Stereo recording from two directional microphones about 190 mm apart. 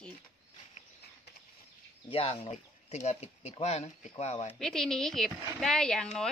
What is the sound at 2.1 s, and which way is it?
Speech, 30° left (ahead or behind).